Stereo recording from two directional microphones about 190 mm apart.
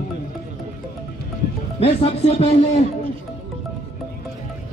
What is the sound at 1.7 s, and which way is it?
Speech, 30° left (ahead or behind).